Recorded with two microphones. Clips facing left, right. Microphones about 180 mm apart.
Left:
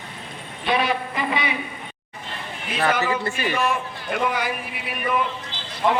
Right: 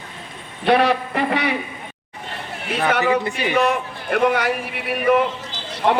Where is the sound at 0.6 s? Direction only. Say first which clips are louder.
Right 6 dB; 65° right (ahead or behind).